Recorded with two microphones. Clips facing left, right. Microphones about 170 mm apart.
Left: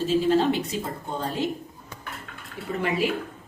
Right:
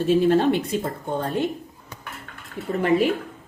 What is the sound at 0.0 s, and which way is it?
Speech, 55° right (ahead or behind).